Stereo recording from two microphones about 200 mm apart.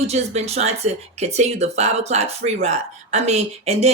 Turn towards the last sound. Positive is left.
turn(degrees=-30)  # may be behind; listen again after turning